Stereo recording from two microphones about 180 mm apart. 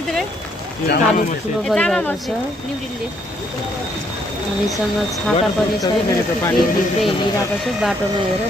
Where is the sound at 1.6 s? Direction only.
5° left (ahead or behind).